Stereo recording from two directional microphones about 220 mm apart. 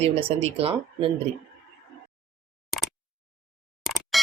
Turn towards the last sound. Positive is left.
turn(degrees=0)  # may be behind; listen again after turning